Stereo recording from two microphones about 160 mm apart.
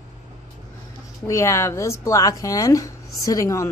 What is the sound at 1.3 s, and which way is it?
Speech, 20° left (ahead or behind).